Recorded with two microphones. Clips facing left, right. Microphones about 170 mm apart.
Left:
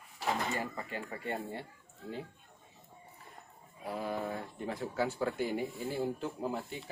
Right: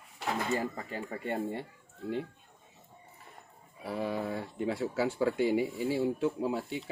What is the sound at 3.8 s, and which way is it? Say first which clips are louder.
Speech: right 3 dB; 85° right.